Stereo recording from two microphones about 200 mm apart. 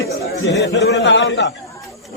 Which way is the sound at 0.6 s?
60° left (ahead or behind).